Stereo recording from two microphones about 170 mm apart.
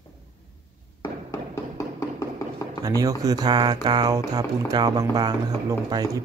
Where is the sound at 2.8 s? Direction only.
20° right (ahead or behind).